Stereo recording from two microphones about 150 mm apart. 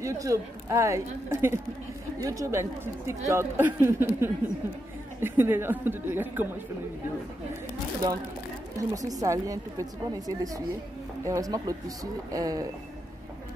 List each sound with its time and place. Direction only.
0.0 s a woman's voice: 20° right (ahead or behind)
8.7 s a woman's voice: 25° right (ahead or behind)